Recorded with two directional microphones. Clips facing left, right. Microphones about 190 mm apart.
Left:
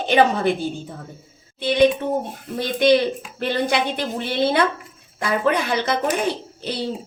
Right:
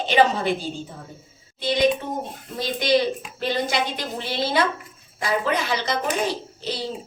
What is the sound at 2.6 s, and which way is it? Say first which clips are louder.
A woman's voice: left 4 dB; 60° left (ahead or behind).